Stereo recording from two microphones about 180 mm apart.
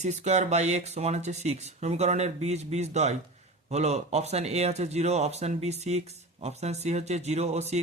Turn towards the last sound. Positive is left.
turn(degrees=-35)  # may be behind; listen again after turning